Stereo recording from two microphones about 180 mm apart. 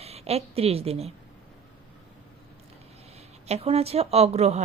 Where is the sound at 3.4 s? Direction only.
35° right (ahead or behind).